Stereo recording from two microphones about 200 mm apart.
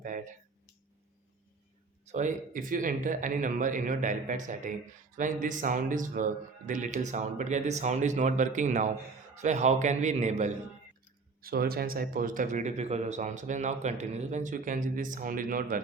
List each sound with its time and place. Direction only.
0.0 s speech: 40° right (ahead or behind)
2.1 s speech: 40° right (ahead or behind)
11.3 s speech: 45° right (ahead or behind)